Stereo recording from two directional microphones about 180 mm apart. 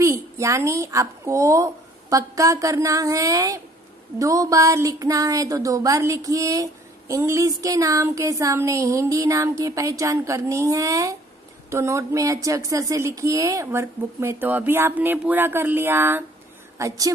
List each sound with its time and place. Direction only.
0.0 s a woman's voice: 15° right (ahead or behind)